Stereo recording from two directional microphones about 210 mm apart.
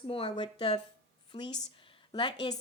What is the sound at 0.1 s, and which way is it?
A woman's voice, 25° left (ahead or behind).